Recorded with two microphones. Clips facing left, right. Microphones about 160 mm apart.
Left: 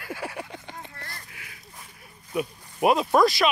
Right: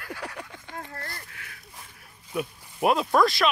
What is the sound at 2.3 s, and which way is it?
Speech, 5° left (ahead or behind).